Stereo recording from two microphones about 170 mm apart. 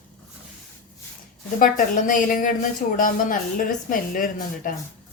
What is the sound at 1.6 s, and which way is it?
A woman's voice, 50° left (ahead or behind).